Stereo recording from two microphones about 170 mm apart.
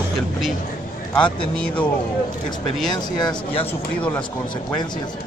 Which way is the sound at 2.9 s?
25° left (ahead or behind).